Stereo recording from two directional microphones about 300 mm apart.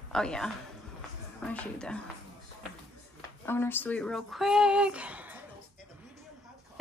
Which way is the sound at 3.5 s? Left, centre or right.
Centre.